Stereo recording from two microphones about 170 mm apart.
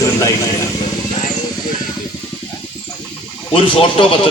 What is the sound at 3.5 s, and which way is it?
Speech, 35° left (ahead or behind).